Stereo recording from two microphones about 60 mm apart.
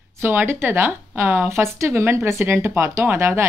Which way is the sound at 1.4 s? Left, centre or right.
Right.